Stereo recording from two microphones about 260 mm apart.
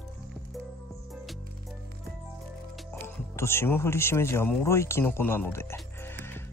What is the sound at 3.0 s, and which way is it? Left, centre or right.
Speech, centre.